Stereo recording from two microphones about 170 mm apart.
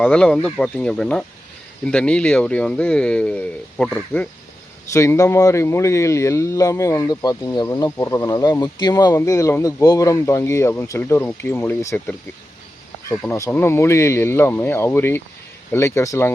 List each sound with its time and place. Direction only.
0.0 s speech: 10° left (ahead or behind)